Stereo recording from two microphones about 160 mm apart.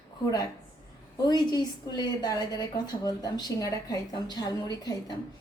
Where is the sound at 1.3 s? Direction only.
25° left (ahead or behind).